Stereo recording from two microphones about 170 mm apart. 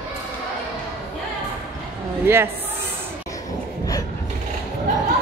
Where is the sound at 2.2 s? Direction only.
15° right (ahead or behind).